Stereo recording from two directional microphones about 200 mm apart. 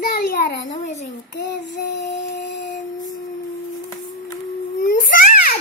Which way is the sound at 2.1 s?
40° left (ahead or behind).